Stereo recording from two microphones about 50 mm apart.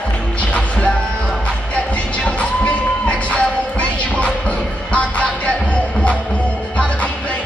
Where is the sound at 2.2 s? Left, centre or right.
Left.